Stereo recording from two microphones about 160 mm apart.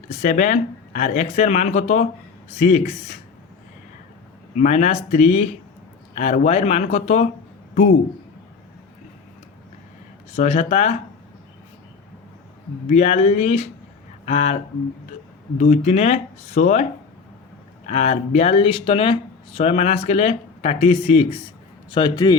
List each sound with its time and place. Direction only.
0.1 s speech: 50° left (ahead or behind)
4.5 s speech: 50° left (ahead or behind)
10.3 s speech: 45° left (ahead or behind)
12.9 s speech: 45° left (ahead or behind)
15.5 s speech: 45° left (ahead or behind)
17.8 s speech: 45° left (ahead or behind); by 22.4 s 25° left (ahead or behind)